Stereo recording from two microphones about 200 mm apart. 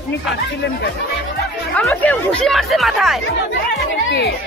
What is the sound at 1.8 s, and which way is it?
Speech, 10° left (ahead or behind).